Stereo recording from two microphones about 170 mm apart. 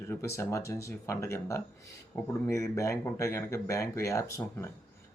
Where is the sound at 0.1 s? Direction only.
15° left (ahead or behind).